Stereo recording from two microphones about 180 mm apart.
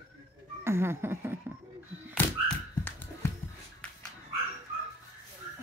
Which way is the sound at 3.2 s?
15° left (ahead or behind).